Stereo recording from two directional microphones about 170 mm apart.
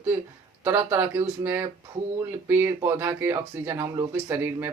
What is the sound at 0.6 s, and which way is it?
Speech, 10° right (ahead or behind).